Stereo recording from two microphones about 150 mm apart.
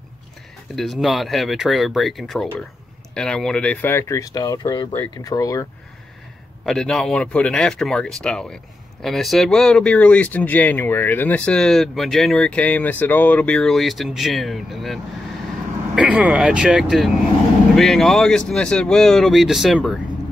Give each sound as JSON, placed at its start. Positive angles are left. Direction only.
{"t": 0.7, "sound": "speech", "side_deg": 0}
{"t": 6.6, "sound": "speech", "side_deg": 0}